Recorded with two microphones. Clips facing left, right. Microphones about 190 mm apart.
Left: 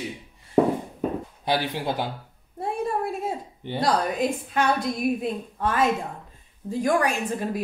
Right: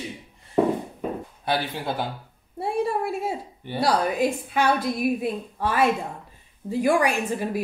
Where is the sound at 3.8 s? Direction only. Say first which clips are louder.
Right 2 dB; 5° right (ahead or behind).